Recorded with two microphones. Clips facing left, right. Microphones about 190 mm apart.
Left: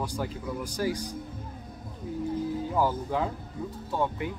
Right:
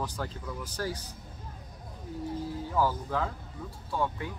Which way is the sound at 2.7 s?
15° left (ahead or behind).